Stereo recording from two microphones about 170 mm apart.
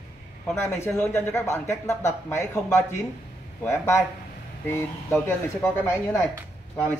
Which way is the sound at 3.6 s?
15° left (ahead or behind).